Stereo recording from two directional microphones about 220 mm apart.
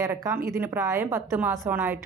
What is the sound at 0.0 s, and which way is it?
A woman's voice, 15° right (ahead or behind).